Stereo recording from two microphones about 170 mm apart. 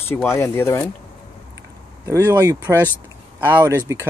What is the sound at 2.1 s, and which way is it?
Speech, 20° right (ahead or behind).